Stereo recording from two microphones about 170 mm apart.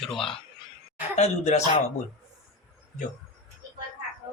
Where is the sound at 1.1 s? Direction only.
40° left (ahead or behind).